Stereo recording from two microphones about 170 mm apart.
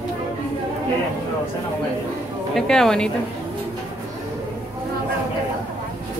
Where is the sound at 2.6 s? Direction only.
5° left (ahead or behind).